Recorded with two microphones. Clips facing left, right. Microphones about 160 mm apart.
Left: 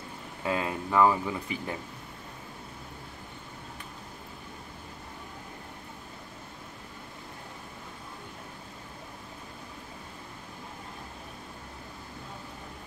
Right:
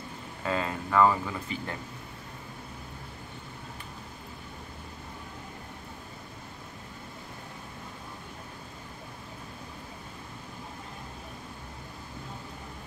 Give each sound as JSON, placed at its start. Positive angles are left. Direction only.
{"t": 0.4, "sound": "speech", "side_deg": 10}